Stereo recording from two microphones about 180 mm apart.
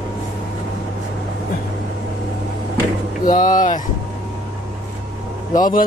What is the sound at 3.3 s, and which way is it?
Speech, 45° left (ahead or behind).